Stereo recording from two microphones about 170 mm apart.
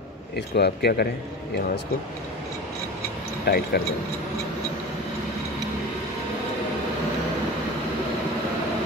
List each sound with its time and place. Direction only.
0.6 s speech: 70° left (ahead or behind)
3.4 s speech: 65° left (ahead or behind)